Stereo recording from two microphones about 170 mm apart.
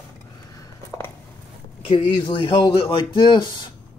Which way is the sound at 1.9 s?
30° left (ahead or behind).